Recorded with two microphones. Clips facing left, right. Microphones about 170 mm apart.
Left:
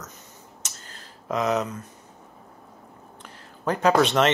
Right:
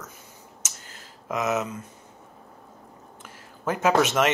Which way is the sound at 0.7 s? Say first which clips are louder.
Left 1 dB; 15° right (ahead or behind).